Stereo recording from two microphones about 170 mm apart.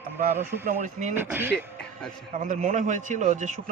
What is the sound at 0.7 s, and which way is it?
Speech, 45° right (ahead or behind).